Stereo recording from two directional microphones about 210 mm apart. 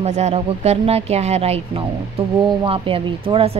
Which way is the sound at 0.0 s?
30° right (ahead or behind).